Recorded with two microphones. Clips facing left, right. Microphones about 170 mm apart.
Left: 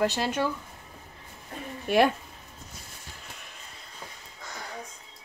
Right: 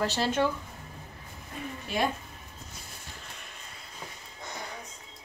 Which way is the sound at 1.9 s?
55° left (ahead or behind).